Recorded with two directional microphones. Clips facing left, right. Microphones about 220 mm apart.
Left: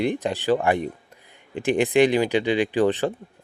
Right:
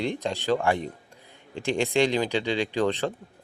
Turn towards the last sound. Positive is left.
turn(degrees=15)  # may be behind; listen again after turning